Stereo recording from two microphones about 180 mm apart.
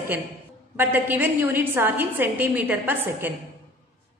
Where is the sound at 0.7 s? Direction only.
10° right (ahead or behind).